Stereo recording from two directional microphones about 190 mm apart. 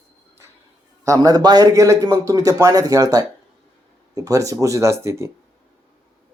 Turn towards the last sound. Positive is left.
turn(degrees=-15)  # may be behind; listen again after turning